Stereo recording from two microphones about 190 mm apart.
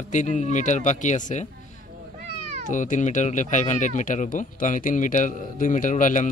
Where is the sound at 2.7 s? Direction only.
40° left (ahead or behind).